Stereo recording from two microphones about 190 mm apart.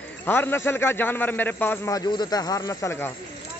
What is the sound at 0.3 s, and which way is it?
A man's voice, 10° left (ahead or behind).